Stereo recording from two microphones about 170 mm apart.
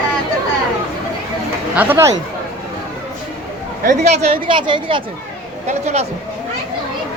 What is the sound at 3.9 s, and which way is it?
Speech, 40° right (ahead or behind).